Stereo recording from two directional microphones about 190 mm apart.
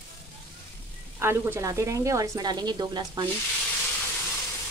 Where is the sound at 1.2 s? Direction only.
10° right (ahead or behind).